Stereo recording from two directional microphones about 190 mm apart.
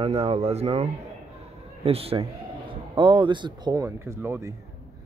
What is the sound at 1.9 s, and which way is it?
Speech, 30° right (ahead or behind).